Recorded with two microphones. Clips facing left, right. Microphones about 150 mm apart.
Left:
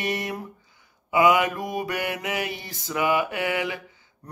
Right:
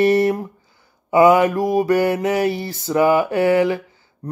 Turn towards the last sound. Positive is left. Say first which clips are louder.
# right 10 dB
turn(degrees=-35)  # may be behind; listen again after turning